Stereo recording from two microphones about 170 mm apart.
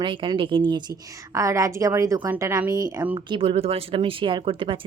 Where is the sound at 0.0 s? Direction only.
30° right (ahead or behind); by 3.2 s 10° right (ahead or behind).